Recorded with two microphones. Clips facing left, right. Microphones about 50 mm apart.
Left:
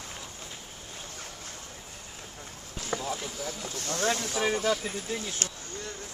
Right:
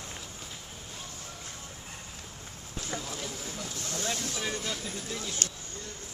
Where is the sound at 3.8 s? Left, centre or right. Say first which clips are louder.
Left 7 dB; left.